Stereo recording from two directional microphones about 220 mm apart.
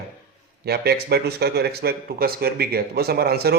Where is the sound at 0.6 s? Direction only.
45° right (ahead or behind).